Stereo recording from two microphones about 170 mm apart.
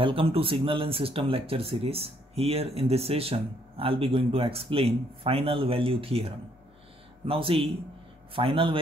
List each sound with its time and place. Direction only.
0.0 s speech: 30° right (ahead or behind)